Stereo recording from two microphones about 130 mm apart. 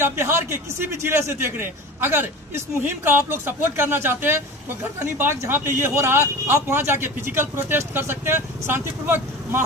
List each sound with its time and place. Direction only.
0.0 s speech: 20° right (ahead or behind)